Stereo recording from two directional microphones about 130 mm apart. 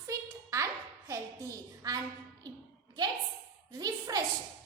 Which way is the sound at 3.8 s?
30° right (ahead or behind).